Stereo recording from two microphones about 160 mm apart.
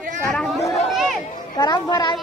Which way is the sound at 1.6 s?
25° left (ahead or behind).